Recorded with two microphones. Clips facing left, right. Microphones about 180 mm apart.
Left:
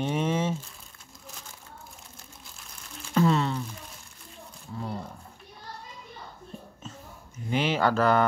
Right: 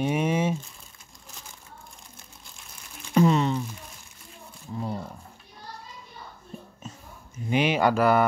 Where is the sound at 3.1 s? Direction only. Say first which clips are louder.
Right 3 dB; 15° right (ahead or behind).